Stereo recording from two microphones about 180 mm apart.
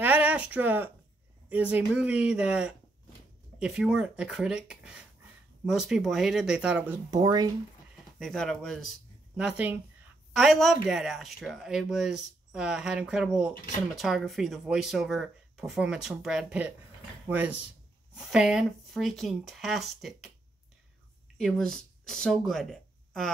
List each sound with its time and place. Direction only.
0.0 s a sound: 10° right (ahead or behind)
1.5 s speech: 10° right (ahead or behind)
7.2 s speech: 20° right (ahead or behind)
8.2 s speech: centre (ahead or behind)
21.4 s speech: 5° left (ahead or behind)